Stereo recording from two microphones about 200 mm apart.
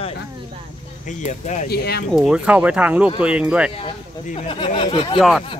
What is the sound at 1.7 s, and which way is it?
Speech, 55° left (ahead or behind).